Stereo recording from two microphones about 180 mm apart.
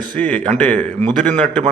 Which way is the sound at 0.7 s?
35° right (ahead or behind).